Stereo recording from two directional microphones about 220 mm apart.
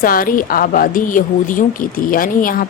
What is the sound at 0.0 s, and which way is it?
A woman's voice, 40° left (ahead or behind).